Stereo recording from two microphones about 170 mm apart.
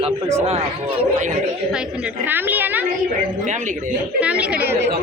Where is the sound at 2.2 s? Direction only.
10° right (ahead or behind).